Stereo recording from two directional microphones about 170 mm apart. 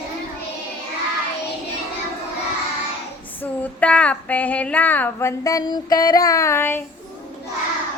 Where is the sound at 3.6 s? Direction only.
5° left (ahead or behind).